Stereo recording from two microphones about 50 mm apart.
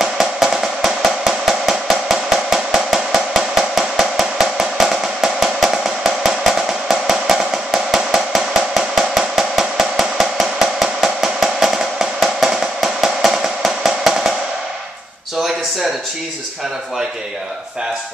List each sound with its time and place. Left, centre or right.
0.0 s drum: centre